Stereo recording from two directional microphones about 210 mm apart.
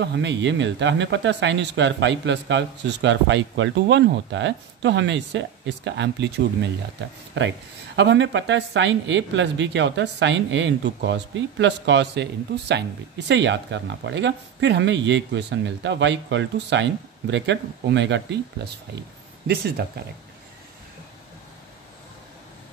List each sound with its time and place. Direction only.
0.0 s speech: 55° right (ahead or behind)